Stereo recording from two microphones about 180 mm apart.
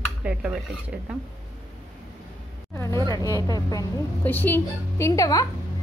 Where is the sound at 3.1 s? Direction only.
20° left (ahead or behind).